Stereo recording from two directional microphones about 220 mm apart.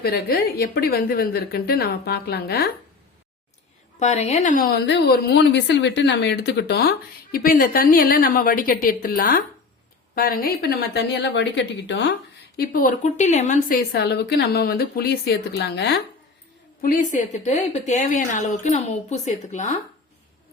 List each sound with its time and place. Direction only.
0.0 s a woman's voice: 45° left (ahead or behind)
4.0 s a woman's voice: 30° left (ahead or behind); by 12.1 s 55° left (ahead or behind)
12.5 s a woman's voice: 40° left (ahead or behind)
13.9 s a woman's voice: 50° left (ahead or behind); by 19.7 s 30° left (ahead or behind)